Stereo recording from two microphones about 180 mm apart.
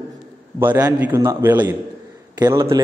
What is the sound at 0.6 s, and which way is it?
A man's voice, 10° right (ahead or behind).